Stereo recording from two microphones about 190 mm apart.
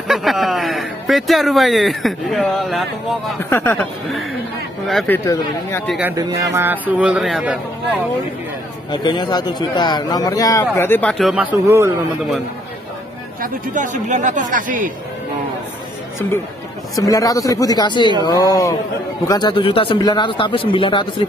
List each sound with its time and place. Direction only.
0.1 s speech: centre (ahead or behind)
3.3 s speech: 10° left (ahead or behind)
4.8 s speech: 5° left (ahead or behind)
5.9 s a man's voice: 5° right (ahead or behind)
8.9 s speech: 25° left (ahead or behind); by 11.4 s centre (ahead or behind)
11.6 s a man's voice: 15° right (ahead or behind)
13.4 s speech: 40° right (ahead or behind)
16.9 s speech: 20° left (ahead or behind)